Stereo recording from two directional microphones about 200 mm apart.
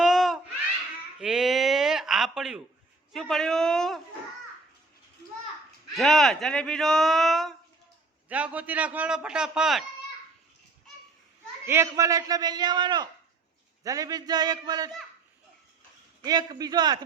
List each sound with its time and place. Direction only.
0.0 s a sound: centre (ahead or behind)
3.1 s speech: centre (ahead or behind)
5.9 s a man's voice: centre (ahead or behind)
11.6 s a man's voice: 15° right (ahead or behind)
16.2 s a man's voice: 20° right (ahead or behind)